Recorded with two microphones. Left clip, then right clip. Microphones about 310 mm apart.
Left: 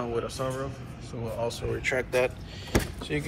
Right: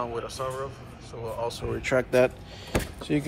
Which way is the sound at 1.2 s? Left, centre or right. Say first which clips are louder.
Even; centre.